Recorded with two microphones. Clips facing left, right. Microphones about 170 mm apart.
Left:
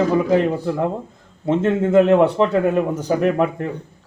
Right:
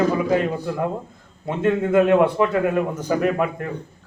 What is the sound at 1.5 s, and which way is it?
A man's voice, 25° left (ahead or behind).